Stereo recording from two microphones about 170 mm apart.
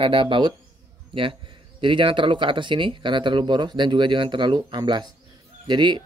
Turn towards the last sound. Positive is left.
turn(degrees=-25)  # may be behind; listen again after turning